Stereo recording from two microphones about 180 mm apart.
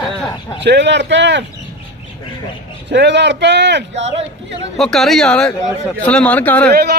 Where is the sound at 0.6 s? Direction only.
70° right (ahead or behind).